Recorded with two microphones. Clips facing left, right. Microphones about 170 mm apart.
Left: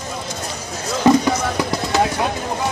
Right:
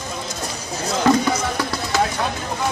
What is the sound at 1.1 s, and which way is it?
Music, 15° left (ahead or behind).